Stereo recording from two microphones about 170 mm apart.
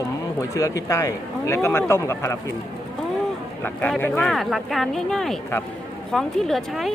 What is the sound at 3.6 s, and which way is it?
A woman's voice, 10° left (ahead or behind).